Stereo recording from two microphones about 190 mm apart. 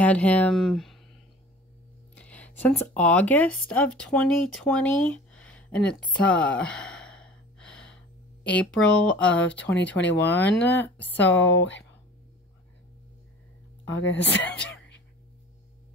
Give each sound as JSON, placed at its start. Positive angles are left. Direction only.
{"t": 0.0, "sound": "speech", "side_deg": 5}
{"t": 2.1, "sound": "speech", "side_deg": 5}
{"t": 6.2, "sound": "gasp", "side_deg": 5}
{"t": 8.5, "sound": "speech", "side_deg": 5}
{"t": 11.4, "sound": "speech", "side_deg": 70}
{"t": 13.8, "sound": "speech", "side_deg": 75}